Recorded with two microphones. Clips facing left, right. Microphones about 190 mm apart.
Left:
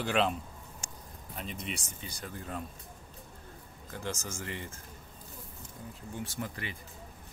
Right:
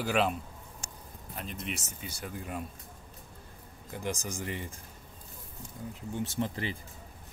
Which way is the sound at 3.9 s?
15° right (ahead or behind).